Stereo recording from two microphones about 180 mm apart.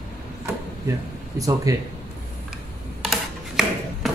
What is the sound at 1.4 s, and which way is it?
Speech, 20° right (ahead or behind).